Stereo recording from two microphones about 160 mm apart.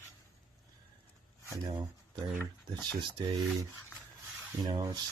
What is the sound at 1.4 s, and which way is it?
Speech, 30° right (ahead or behind).